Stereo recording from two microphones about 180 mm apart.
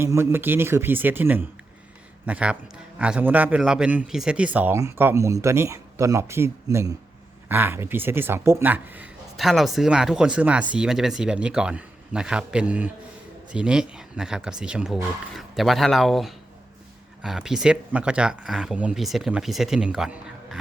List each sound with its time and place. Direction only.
0.0 s a man's voice: 15° right (ahead or behind)